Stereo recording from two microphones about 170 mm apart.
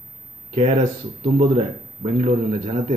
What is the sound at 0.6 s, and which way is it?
Speech, 35° right (ahead or behind).